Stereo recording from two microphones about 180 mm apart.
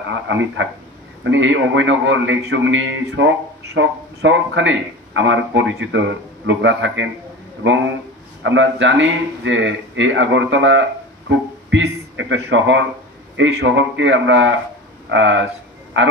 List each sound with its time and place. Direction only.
0.1 s a man's voice: 90° right